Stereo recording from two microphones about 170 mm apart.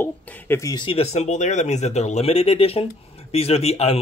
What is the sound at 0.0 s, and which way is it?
Speech, 10° left (ahead or behind).